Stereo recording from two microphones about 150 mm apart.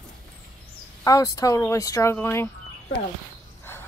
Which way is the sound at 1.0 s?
25° left (ahead or behind).